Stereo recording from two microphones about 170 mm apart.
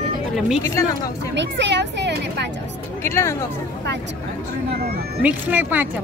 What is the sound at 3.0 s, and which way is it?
Speech, 15° left (ahead or behind).